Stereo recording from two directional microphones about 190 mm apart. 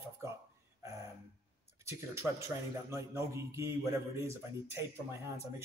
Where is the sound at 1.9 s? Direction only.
15° right (ahead or behind).